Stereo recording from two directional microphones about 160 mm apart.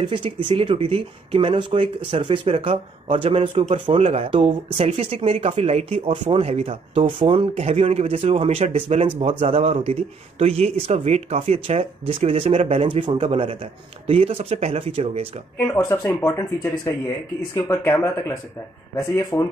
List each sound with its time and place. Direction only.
0.0 s speech: 30° right (ahead or behind)
15.5 s speech: 15° left (ahead or behind)
18.9 s speech: 20° left (ahead or behind)